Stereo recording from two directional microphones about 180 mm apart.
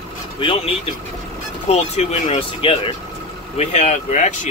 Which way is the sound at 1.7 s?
35° left (ahead or behind).